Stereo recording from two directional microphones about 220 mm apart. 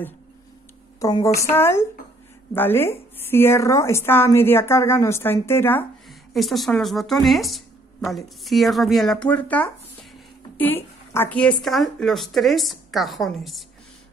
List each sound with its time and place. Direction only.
0.9 s a woman's voice: 15° left (ahead or behind)
11.1 s speech: 5° left (ahead or behind)